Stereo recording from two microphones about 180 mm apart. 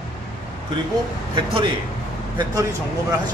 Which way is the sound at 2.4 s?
20° right (ahead or behind).